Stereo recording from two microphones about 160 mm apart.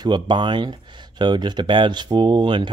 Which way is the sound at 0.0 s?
30° right (ahead or behind).